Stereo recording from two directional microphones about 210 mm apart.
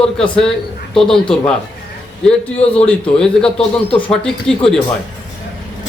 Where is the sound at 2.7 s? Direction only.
5° left (ahead or behind).